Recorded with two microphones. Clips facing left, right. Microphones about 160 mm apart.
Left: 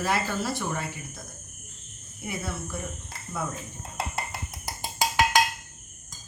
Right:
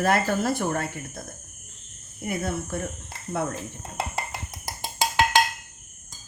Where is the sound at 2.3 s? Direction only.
50° right (ahead or behind).